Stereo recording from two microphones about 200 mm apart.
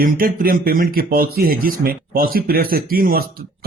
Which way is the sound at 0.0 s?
45° right (ahead or behind).